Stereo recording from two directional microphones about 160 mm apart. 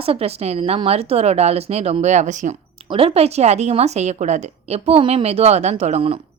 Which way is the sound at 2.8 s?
35° right (ahead or behind).